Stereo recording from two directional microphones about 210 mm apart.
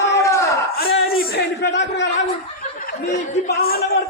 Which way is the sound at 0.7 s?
45° left (ahead or behind).